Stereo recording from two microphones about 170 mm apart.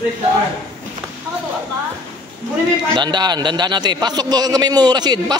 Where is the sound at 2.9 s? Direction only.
25° right (ahead or behind).